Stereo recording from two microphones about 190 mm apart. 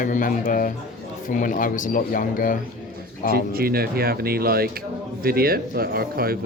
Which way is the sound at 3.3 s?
50° right (ahead or behind).